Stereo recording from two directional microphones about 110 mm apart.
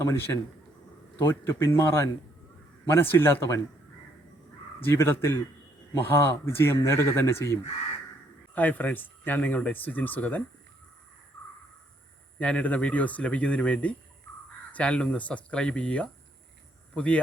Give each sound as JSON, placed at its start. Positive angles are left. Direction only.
{"t": 1.2, "sound": "speech", "side_deg": 20}
{"t": 4.9, "sound": "speech", "side_deg": 20}
{"t": 12.4, "sound": "speech", "side_deg": 10}